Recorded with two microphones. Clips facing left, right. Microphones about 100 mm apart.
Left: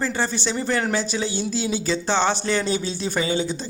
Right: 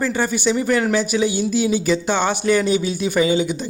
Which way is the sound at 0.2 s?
15° right (ahead or behind).